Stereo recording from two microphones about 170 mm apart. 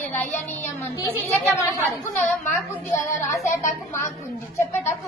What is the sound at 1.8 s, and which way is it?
Speech, centre (ahead or behind).